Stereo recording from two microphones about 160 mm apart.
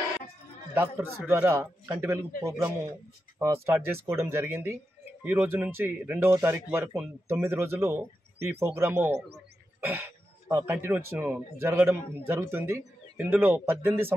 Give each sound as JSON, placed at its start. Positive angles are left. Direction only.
{"t": 0.7, "sound": "speech", "side_deg": -10}